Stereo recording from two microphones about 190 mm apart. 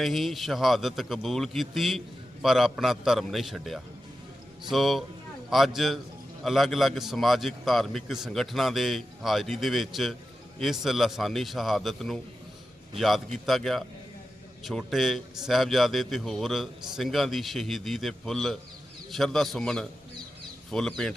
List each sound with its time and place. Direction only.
0.0 s a man's voice: centre (ahead or behind)